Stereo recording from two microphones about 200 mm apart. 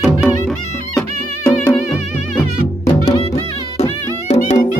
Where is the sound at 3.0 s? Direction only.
25° left (ahead or behind).